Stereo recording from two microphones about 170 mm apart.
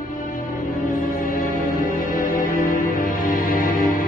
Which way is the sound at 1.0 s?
55° left (ahead or behind).